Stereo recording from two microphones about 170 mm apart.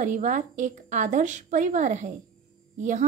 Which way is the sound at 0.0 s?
45° right (ahead or behind).